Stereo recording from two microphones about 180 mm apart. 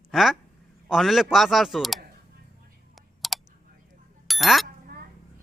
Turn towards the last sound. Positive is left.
turn(degrees=0)  # may be behind; listen again after turning